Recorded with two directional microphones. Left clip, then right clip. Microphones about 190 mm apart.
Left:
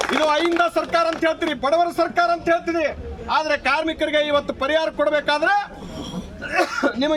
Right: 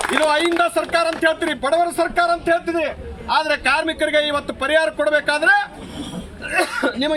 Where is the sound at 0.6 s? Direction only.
10° left (ahead or behind).